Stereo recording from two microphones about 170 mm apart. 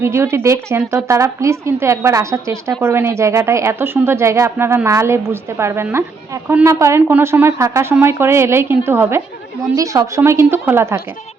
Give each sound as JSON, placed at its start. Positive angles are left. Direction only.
{"t": 0.0, "sound": "speech", "side_deg": -15}